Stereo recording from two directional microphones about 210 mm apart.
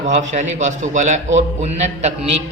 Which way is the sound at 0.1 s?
35° right (ahead or behind).